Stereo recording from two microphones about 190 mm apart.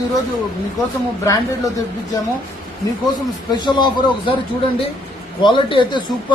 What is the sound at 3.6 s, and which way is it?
Speech, 25° left (ahead or behind).